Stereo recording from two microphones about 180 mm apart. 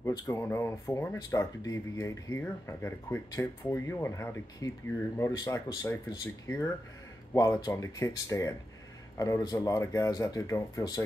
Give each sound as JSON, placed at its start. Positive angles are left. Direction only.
{"t": 0.0, "sound": "speech", "side_deg": 20}